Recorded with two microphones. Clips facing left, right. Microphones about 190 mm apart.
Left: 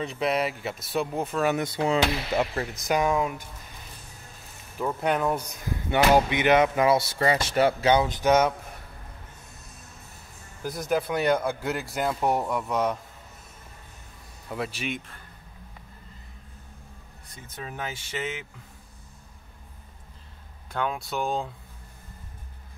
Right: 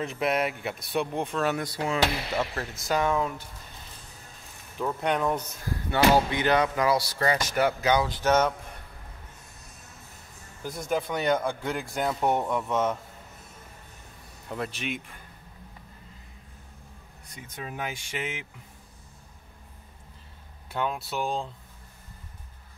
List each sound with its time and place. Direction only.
0.0 s speech: centre (ahead or behind)
1.5 s speech: 25° left (ahead or behind)
4.7 s speech: 5° left (ahead or behind)
10.6 s speech: 5° left (ahead or behind)
14.5 s speech: 5° left (ahead or behind)
17.6 s speech: 15° right (ahead or behind)
20.7 s speech: centre (ahead or behind)